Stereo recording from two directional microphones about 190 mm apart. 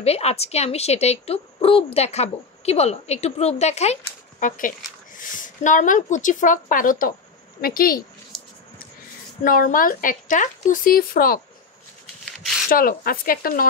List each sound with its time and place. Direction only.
0.0 s speech: 35° left (ahead or behind); by 8.0 s 50° left (ahead or behind)
9.4 s speech: 45° left (ahead or behind)
12.6 s speech: 50° left (ahead or behind)